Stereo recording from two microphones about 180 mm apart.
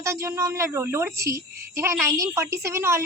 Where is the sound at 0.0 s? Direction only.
15° right (ahead or behind).